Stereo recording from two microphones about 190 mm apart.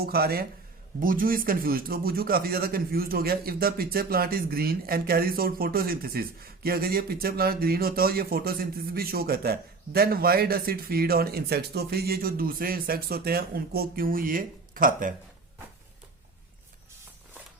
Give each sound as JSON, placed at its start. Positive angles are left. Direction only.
{"t": 0.0, "sound": "a man's voice", "side_deg": -55}